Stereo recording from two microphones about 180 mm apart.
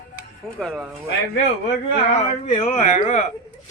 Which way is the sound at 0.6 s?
Centre (ahead or behind).